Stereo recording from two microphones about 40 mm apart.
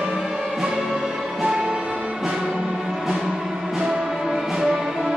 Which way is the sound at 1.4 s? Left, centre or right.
Right.